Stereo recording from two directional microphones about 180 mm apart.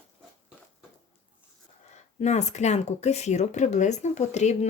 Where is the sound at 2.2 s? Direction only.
40° left (ahead or behind).